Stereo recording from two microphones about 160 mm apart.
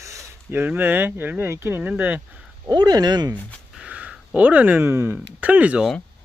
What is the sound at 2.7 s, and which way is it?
Speech, 25° right (ahead or behind).